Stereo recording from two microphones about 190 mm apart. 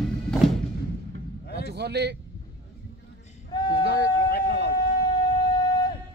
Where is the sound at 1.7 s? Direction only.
60° right (ahead or behind).